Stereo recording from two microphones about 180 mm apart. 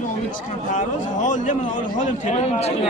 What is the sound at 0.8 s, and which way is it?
A man's voice, 45° left (ahead or behind).